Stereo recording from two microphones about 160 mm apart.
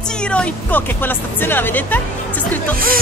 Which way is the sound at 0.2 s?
5° left (ahead or behind).